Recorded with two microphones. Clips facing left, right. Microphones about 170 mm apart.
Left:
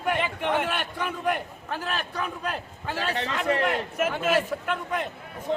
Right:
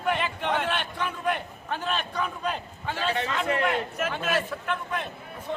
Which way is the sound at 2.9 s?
35° left (ahead or behind).